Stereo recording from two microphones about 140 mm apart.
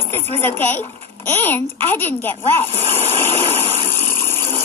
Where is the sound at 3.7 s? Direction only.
45° left (ahead or behind).